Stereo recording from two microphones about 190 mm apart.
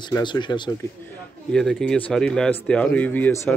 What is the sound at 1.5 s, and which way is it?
Speech, 5° left (ahead or behind).